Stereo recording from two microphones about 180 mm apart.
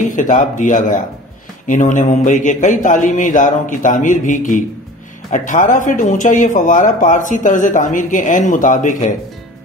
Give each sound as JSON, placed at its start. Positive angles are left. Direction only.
{"t": 0.1, "sound": "speech", "side_deg": 45}